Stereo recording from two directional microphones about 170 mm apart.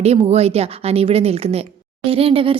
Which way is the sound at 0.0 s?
35° right (ahead or behind).